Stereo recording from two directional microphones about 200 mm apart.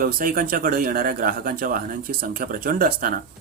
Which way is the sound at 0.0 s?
45° right (ahead or behind).